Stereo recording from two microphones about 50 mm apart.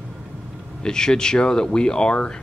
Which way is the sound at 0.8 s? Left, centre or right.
Centre.